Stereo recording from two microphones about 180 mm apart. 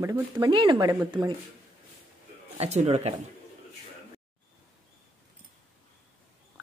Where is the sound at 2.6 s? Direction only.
40° right (ahead or behind).